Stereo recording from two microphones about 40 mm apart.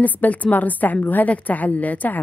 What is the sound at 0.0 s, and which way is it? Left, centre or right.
A woman's voice, left.